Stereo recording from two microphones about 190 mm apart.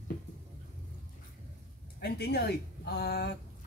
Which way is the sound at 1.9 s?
55° left (ahead or behind).